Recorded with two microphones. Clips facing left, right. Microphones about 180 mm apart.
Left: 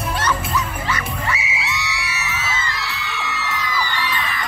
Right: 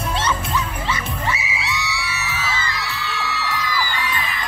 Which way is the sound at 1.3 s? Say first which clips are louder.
Right 1 dB; 30° right (ahead or behind).